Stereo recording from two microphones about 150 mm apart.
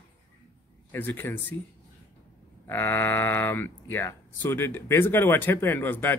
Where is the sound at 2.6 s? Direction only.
15° left (ahead or behind).